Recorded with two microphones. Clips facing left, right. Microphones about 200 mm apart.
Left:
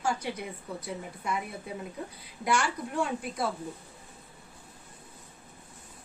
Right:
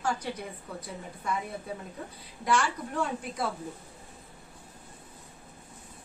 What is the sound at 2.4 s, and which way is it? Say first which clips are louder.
Speech: right 1 dB; 10° left (ahead or behind).